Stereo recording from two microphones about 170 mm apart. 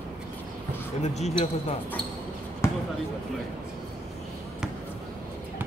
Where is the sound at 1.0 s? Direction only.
40° left (ahead or behind).